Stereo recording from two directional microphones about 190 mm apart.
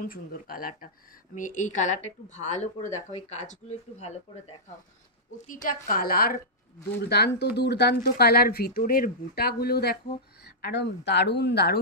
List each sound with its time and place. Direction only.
0.0 s speech: 50° left (ahead or behind)